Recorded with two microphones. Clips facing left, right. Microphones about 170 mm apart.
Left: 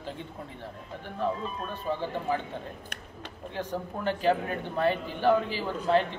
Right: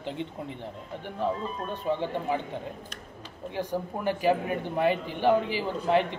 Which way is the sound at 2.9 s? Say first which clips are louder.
Even; 65° left (ahead or behind).